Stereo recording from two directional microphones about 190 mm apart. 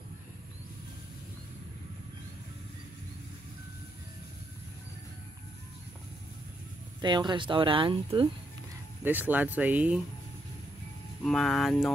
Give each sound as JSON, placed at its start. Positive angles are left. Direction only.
{"t": 7.0, "sound": "speech", "side_deg": -25}
{"t": 9.0, "sound": "speech", "side_deg": -10}
{"t": 11.2, "sound": "speech", "side_deg": 0}